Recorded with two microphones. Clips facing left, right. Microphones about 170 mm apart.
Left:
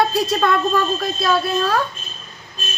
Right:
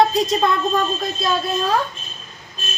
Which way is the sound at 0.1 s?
20° right (ahead or behind).